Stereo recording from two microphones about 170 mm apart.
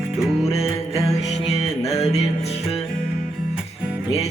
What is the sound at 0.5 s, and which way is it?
Music, 20° left (ahead or behind).